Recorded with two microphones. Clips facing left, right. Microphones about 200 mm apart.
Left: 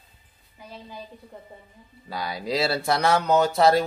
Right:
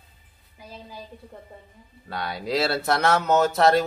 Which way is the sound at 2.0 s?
Centre (ahead or behind).